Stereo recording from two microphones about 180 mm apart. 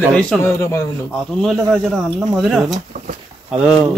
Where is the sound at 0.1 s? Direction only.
5° left (ahead or behind).